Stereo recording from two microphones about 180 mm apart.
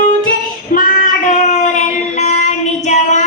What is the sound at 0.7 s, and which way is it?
Child singing, 45° left (ahead or behind).